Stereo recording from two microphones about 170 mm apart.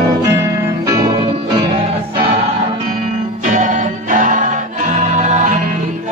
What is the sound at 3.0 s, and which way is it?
Music, 45° right (ahead or behind).